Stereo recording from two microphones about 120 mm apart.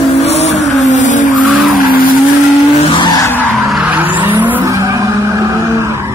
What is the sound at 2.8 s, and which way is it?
Skidding, 40° left (ahead or behind).